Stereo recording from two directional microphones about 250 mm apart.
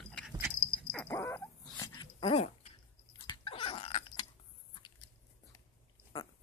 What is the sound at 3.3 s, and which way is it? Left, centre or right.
Chewing, left.